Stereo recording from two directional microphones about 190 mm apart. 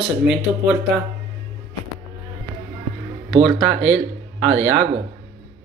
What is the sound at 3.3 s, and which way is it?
Speech, 35° right (ahead or behind).